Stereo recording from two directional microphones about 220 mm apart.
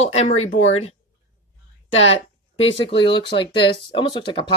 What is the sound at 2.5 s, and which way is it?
Speech, 25° left (ahead or behind).